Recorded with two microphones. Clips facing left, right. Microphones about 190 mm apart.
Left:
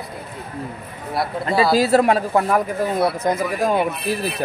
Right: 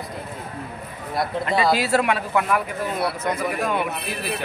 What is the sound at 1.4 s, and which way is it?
A man's voice, 30° left (ahead or behind).